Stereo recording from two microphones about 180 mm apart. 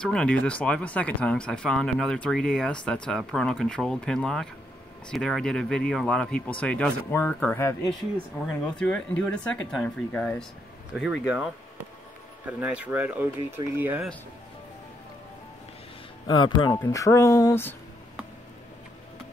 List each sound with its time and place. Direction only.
0.0 s speech: 5° left (ahead or behind)
8.7 s speech: 5° left (ahead or behind)
11.0 s speech: 5° right (ahead or behind)
16.3 s speech: 25° left (ahead or behind)